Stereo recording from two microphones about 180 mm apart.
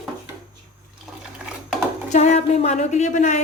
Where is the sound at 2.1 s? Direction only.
40° left (ahead or behind).